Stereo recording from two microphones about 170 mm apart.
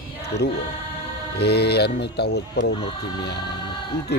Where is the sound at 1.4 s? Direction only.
75° left (ahead or behind).